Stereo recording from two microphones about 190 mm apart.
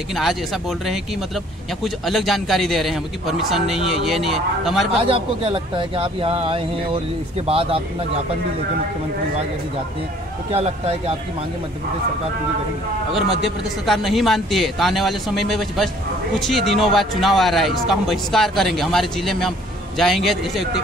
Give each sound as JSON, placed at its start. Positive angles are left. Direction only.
{"t": 0.1, "sound": "speech", "side_deg": 0}
{"t": 5.1, "sound": "a man's voice", "side_deg": -25}
{"t": 10.5, "sound": "speech", "side_deg": -30}
{"t": 13.8, "sound": "speech", "side_deg": 0}